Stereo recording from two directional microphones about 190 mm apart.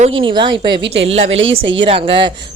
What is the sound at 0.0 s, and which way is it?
A woman's voice, 25° right (ahead or behind).